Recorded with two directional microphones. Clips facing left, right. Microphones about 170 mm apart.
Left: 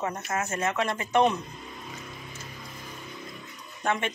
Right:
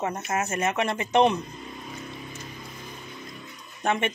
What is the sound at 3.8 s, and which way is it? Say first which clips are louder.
Speech: right 3 dB; 20° right (ahead or behind).